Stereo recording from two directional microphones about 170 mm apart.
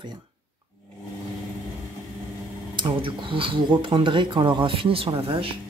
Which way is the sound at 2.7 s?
30° right (ahead or behind).